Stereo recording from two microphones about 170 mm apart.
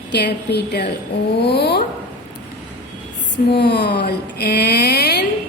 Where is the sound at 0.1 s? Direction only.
80° left.